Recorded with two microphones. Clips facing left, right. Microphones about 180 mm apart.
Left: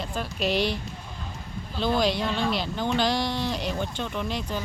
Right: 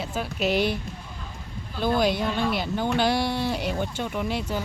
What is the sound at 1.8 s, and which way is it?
Speech, 5° right (ahead or behind).